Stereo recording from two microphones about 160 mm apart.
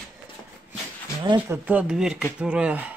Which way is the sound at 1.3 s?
10° right (ahead or behind).